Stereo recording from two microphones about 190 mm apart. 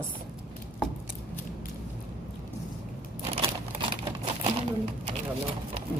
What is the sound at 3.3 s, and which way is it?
Crumpling, 30° right (ahead or behind).